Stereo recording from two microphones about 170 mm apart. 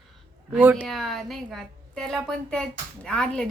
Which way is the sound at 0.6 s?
10° right (ahead or behind).